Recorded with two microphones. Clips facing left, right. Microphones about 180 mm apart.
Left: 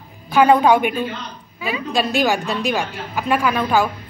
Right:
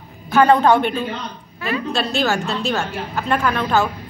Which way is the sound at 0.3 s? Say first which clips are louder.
Even; 10° left (ahead or behind).